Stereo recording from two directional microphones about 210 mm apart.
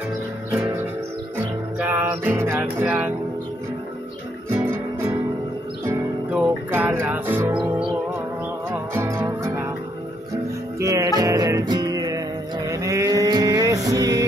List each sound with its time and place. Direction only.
1.8 s music: 5° right (ahead or behind)
4.6 s music: 15° right (ahead or behind)
8.9 s music: 15° right (ahead or behind)
10.8 s music: 15° right (ahead or behind)